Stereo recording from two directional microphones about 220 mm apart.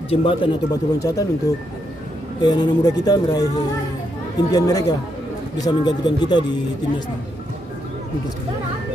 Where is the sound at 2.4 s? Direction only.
20° left (ahead or behind).